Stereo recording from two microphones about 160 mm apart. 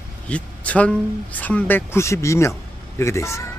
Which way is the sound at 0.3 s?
10° left (ahead or behind).